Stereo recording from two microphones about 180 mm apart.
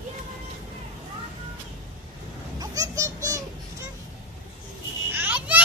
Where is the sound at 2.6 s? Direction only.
20° right (ahead or behind).